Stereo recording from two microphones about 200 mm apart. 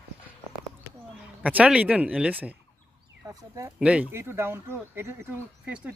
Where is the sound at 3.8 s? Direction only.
5° right (ahead or behind).